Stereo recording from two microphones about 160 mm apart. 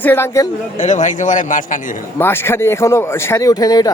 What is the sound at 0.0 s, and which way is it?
Speech, 15° left (ahead or behind).